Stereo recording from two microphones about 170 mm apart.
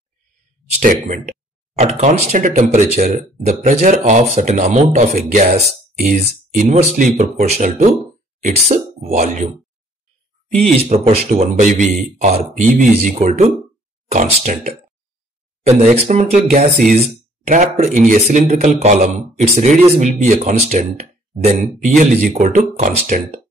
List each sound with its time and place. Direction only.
0.7 s speech: 45° right (ahead or behind)
10.5 s speech: 40° right (ahead or behind)
15.8 s speech: 40° right (ahead or behind)